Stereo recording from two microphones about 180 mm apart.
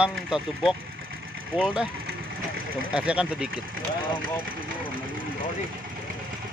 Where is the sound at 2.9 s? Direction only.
5° right (ahead or behind).